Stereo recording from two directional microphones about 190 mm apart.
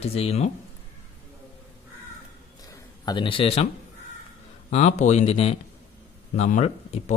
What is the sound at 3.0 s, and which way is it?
Speech, 25° left (ahead or behind).